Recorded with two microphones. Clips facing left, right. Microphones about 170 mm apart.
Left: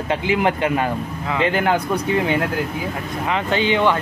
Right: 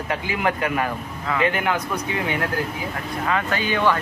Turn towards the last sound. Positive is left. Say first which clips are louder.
# left 4 dB
turn(degrees=20)  # may be behind; listen again after turning